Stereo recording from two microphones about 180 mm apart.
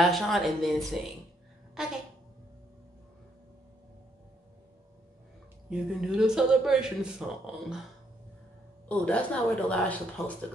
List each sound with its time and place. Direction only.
0.0 s speech: centre (ahead or behind)
5.7 s speech: 5° right (ahead or behind)
8.8 s speech: 5° left (ahead or behind)